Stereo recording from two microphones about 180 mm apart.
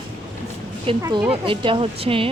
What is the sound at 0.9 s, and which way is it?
Speech, 30° right (ahead or behind).